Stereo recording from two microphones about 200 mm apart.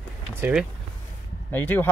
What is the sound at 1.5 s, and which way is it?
Speech, 10° left (ahead or behind).